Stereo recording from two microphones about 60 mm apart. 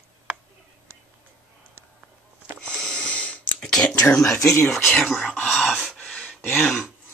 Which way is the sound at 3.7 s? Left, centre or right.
Centre.